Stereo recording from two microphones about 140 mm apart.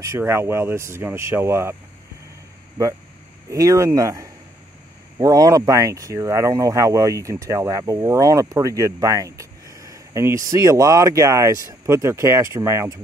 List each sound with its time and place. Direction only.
0.0 s speech: 20° right (ahead or behind)
3.4 s speech: 25° right (ahead or behind)